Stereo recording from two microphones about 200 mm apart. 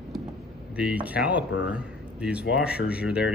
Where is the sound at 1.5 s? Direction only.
75° left (ahead or behind).